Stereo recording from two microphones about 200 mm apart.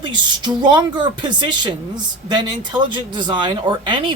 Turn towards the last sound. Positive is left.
turn(degrees=-25)  # may be behind; listen again after turning